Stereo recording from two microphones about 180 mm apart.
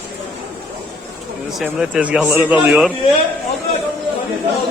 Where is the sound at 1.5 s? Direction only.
Centre (ahead or behind).